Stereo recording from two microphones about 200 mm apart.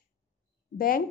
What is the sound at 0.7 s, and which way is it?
Speech, 45° left (ahead or behind).